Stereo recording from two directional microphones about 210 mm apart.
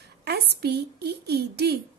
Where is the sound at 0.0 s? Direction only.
50° right (ahead or behind).